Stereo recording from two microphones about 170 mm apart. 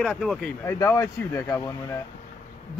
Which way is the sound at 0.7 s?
15° left (ahead or behind).